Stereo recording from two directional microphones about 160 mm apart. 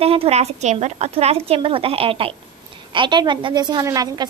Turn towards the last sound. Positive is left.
turn(degrees=-25)  # may be behind; listen again after turning